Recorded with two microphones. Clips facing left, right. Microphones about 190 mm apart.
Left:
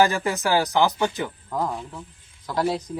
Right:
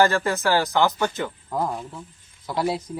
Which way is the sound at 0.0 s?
15° left (ahead or behind).